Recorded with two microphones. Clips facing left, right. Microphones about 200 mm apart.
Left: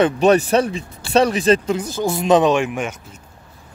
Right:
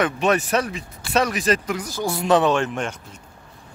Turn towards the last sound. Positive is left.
turn(degrees=10)  # may be behind; listen again after turning